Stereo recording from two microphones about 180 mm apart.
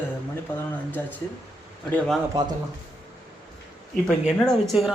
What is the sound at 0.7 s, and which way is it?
Speech, 10° left (ahead or behind).